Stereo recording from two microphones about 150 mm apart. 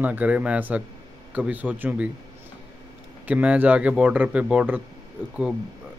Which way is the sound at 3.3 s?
10° right (ahead or behind).